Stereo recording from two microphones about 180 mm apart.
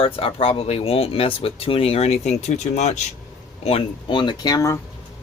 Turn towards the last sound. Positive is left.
turn(degrees=15)  # may be behind; listen again after turning